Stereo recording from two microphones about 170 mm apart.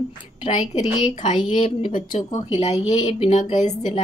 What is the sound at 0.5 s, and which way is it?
Speech, 40° left (ahead or behind).